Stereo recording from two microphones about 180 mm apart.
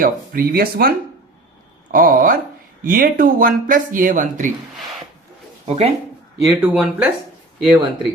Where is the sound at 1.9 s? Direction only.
50° right (ahead or behind).